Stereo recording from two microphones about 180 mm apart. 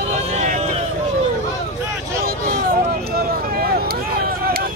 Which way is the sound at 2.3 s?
55° right (ahead or behind).